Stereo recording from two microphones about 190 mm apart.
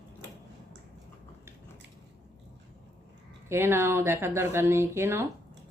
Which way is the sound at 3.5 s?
15° right (ahead or behind).